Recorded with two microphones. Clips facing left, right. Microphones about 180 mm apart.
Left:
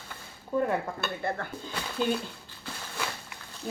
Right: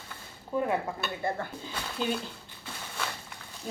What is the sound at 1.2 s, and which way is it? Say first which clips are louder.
Speech: even; 15° right (ahead or behind).